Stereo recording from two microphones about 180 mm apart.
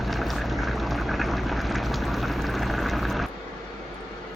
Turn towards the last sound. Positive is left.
turn(degrees=0)  # may be behind; listen again after turning